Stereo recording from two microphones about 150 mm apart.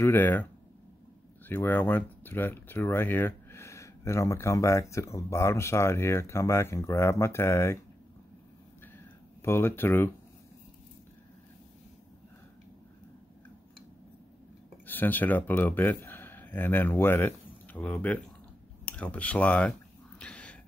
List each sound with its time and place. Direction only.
0.0 s speech: 15° left (ahead or behind)
1.5 s speech: 15° left (ahead or behind)
9.4 s speech: 15° left (ahead or behind)
14.9 s speech: 10° left (ahead or behind)
20.2 s a sound: 5° left (ahead or behind)